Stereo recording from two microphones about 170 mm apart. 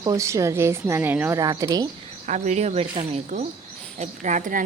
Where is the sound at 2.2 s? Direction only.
45° right (ahead or behind).